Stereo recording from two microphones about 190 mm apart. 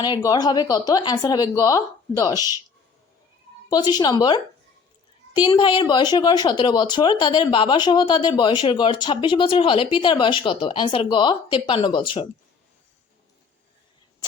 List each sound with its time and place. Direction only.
0.0 s a woman's voice: 20° left (ahead or behind)
3.7 s a woman's voice: 20° left (ahead or behind)
5.5 s a woman's voice: 25° left (ahead or behind)